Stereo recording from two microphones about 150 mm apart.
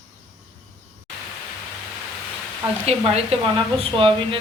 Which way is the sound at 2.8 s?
40° right (ahead or behind).